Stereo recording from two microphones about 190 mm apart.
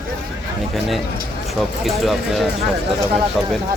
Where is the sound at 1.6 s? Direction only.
Centre (ahead or behind).